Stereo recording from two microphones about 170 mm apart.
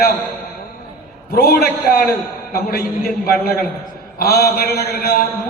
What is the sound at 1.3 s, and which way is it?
A man's voice, 65° left (ahead or behind).